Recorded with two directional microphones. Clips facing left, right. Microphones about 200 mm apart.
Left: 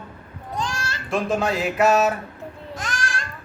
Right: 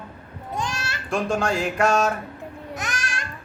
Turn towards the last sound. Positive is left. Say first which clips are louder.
# left 2 dB
turn(degrees=-20)  # may be behind; listen again after turning